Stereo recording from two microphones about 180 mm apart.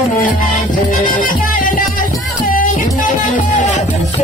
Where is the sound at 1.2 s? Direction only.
50° left (ahead or behind).